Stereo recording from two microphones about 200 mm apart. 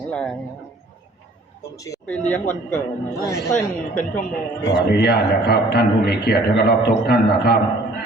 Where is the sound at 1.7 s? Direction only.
15° left (ahead or behind).